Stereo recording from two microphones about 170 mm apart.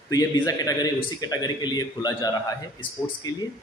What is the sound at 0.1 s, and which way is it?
Speech, 20° left (ahead or behind).